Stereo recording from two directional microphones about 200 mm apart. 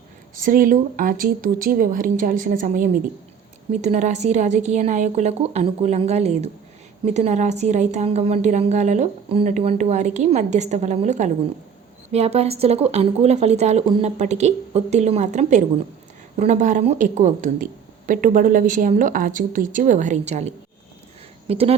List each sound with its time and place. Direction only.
0.4 s a woman's voice: 45° right (ahead or behind)